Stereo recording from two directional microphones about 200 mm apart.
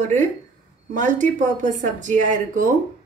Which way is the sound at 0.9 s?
40° right (ahead or behind).